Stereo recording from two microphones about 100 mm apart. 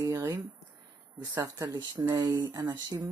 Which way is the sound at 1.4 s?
35° right (ahead or behind).